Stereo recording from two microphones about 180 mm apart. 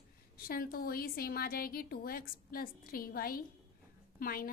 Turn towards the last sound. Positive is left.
turn(degrees=55)  # may be behind; listen again after turning